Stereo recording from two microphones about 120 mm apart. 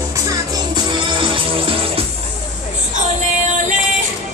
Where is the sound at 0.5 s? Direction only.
40° right (ahead or behind).